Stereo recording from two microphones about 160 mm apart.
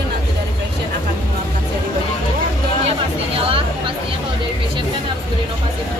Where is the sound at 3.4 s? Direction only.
35° right (ahead or behind).